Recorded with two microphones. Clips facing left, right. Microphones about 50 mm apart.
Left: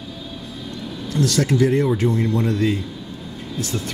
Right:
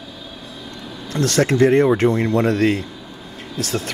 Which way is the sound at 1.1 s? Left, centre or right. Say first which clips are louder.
Right 2 dB; right.